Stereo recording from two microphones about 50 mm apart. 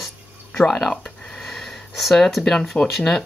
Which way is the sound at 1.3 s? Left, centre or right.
Centre.